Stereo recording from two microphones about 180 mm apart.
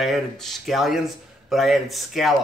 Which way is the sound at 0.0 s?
Centre (ahead or behind).